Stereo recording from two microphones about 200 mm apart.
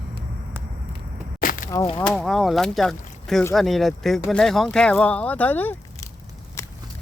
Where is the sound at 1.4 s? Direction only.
45° left (ahead or behind).